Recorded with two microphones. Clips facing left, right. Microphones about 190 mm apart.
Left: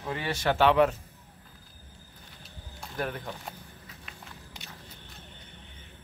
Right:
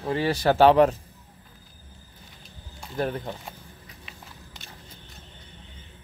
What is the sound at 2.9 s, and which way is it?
Speech, 30° right (ahead or behind).